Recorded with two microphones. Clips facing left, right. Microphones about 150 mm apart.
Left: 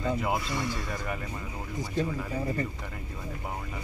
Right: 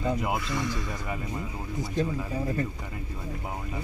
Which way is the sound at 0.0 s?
15° right (ahead or behind).